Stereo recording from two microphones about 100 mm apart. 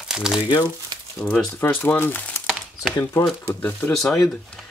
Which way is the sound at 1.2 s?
5° left (ahead or behind).